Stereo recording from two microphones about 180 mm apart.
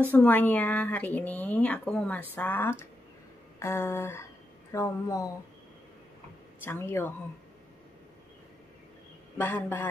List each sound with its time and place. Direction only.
0.1 s speech: 10° left (ahead or behind)
6.6 s speech: 10° left (ahead or behind)
9.4 s speech: 10° left (ahead or behind)